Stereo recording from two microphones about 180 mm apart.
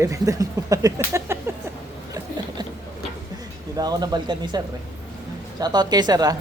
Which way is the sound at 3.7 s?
20° right (ahead or behind).